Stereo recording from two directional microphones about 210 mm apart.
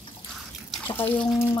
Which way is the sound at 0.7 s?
10° left (ahead or behind).